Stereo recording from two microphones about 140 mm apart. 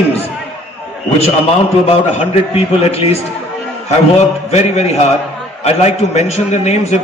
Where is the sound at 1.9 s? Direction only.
45° left (ahead or behind).